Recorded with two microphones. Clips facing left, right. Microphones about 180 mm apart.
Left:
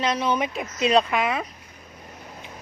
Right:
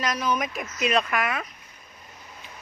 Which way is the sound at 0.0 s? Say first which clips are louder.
Left 3 dB; 25° left (ahead or behind).